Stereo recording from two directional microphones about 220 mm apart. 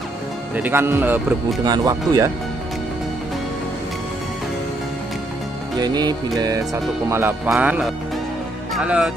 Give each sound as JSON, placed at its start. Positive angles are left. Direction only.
{"t": 0.6, "sound": "speech", "side_deg": -10}
{"t": 5.8, "sound": "speech", "side_deg": -20}